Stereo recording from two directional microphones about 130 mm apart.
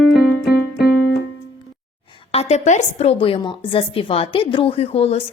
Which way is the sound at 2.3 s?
55° left (ahead or behind).